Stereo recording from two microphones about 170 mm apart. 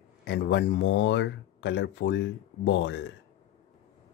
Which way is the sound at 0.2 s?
85° left.